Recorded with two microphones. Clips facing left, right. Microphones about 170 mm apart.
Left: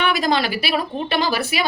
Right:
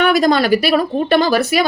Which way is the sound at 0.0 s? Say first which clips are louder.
Right 7 dB; 45° right (ahead or behind).